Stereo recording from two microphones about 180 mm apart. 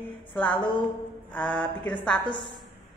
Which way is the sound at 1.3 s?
5° left (ahead or behind).